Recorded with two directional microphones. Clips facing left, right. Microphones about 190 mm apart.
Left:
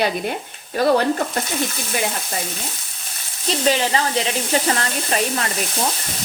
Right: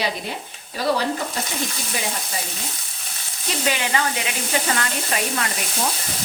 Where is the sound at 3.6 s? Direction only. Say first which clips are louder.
Left 4 dB; 35° left (ahead or behind).